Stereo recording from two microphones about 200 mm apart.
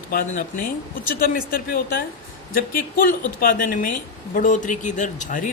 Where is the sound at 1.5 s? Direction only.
45° left (ahead or behind).